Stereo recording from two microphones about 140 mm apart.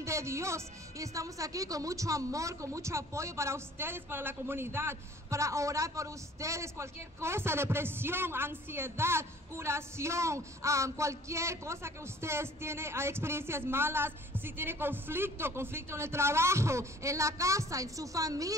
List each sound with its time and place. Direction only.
0.0 s speech: 20° right (ahead or behind)